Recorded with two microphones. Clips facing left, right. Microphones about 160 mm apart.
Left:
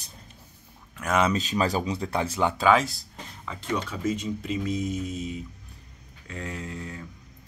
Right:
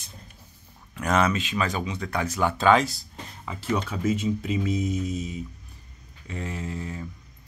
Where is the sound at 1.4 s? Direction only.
35° left (ahead or behind).